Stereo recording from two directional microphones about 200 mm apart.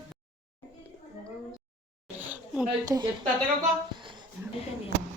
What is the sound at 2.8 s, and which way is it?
Speech, 20° right (ahead or behind).